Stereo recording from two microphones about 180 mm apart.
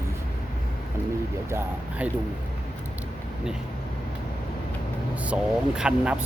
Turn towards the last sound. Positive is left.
turn(degrees=-5)  # may be behind; listen again after turning